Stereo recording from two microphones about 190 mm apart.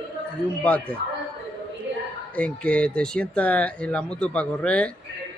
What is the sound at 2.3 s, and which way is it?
Speech, 5° left (ahead or behind).